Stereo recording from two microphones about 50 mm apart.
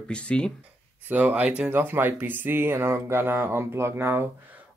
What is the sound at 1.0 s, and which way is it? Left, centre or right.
Speech, right.